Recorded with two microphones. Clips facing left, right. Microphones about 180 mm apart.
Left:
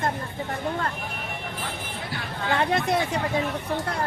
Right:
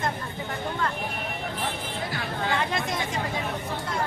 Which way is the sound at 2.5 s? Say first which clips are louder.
Left 7 dB; 60° left (ahead or behind).